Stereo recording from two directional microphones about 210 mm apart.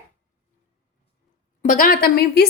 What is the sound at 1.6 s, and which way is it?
Speech, 40° left (ahead or behind).